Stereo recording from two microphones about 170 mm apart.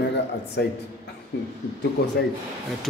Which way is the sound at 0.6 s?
75° left (ahead or behind).